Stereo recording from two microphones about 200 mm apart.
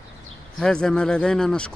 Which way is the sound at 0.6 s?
5° left (ahead or behind).